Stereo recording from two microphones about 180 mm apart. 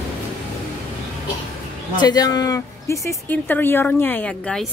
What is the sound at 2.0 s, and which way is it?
A woman's voice, 20° left (ahead or behind).